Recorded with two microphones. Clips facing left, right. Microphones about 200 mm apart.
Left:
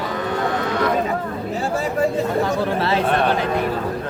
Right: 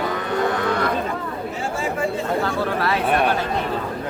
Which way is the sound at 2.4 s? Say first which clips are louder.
Left 2 dB; 25° left (ahead or behind).